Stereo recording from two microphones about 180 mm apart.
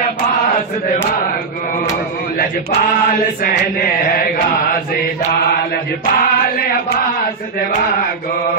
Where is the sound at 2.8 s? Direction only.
50° left (ahead or behind).